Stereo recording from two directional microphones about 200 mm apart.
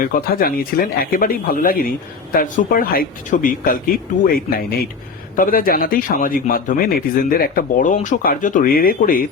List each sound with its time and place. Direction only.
0.0 s a man's voice: 45° left (ahead or behind)